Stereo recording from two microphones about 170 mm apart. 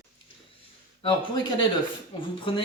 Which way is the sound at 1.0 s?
30° left (ahead or behind).